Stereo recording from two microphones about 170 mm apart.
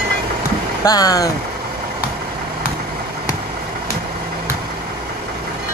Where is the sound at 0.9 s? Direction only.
20° left (ahead or behind).